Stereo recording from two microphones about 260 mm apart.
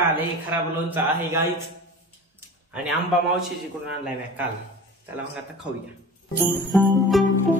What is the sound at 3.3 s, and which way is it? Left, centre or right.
A man's voice, centre.